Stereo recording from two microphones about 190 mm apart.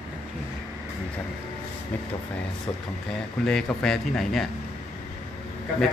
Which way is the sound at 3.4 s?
5° left (ahead or behind).